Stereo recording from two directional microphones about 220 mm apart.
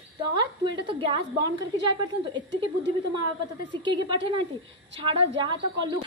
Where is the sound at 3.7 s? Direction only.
20° right (ahead or behind).